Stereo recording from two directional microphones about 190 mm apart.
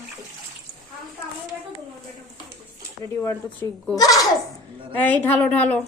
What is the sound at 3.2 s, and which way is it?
Speech, 15° left (ahead or behind).